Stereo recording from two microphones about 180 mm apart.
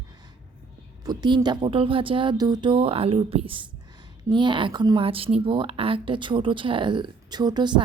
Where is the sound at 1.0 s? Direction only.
25° right (ahead or behind).